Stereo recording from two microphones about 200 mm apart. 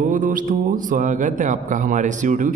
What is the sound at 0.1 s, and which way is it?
A man's voice, 40° right (ahead or behind).